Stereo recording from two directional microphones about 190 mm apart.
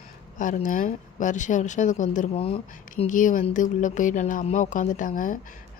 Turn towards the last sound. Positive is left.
turn(degrees=45)  # may be behind; listen again after turning